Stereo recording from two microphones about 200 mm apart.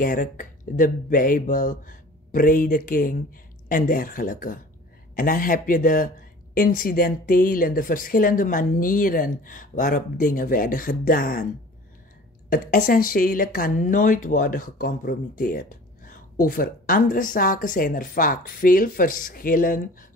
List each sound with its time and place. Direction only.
0.0 s speech: 40° left (ahead or behind)
12.4 s speech: 45° left (ahead or behind)